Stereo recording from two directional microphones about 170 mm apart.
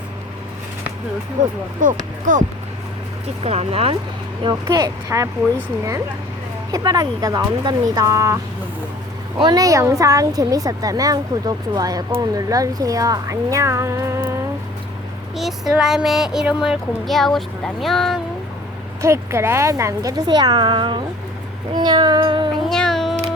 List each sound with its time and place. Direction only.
1.8 s speech: 50° right (ahead or behind)
3.4 s speech: 35° right (ahead or behind)
4.4 s a woman's voice: 25° right (ahead or behind)
6.7 s a woman's voice: 20° right (ahead or behind)
9.4 s a woman's voice: 25° right (ahead or behind)
15.4 s speech: centre (ahead or behind)
19.0 s a woman's voice: 15° right (ahead or behind)
22.7 s cat: 5° left (ahead or behind)